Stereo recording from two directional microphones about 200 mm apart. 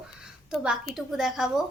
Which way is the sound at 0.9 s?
Centre (ahead or behind).